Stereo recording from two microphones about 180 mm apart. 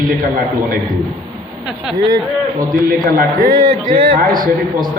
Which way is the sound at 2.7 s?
50° right (ahead or behind).